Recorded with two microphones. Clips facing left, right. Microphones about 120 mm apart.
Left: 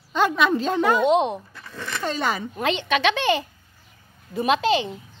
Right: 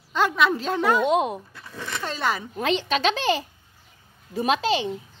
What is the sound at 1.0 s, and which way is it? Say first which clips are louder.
Speech: left 3 dB; 25° left (ahead or behind).